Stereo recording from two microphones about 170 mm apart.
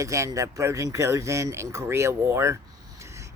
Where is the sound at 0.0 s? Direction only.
20° right (ahead or behind).